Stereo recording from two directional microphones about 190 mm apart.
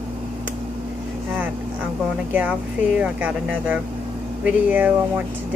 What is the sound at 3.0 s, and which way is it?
Speech, 5° right (ahead or behind).